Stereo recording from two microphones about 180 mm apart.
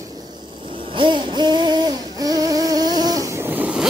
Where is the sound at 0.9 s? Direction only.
25° right (ahead or behind).